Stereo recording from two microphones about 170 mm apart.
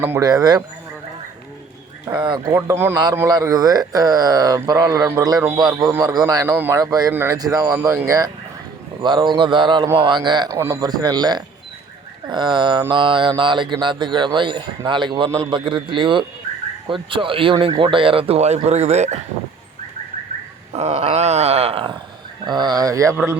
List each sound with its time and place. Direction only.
0.0 s a man's voice: 15° right (ahead or behind)
0.3 s speech: 25° right (ahead or behind)
2.0 s speech: 25° right (ahead or behind)
2.6 s a man's voice: 15° right (ahead or behind)
10.6 s a man's voice: 15° right (ahead or behind)
10.8 s speech: 25° right (ahead or behind); by 19.2 s 40° right (ahead or behind)
20.7 s speech: 40° right (ahead or behind); by 23.1 s 20° right (ahead or behind)